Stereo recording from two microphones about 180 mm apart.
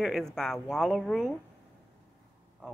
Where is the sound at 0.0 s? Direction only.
Centre (ahead or behind).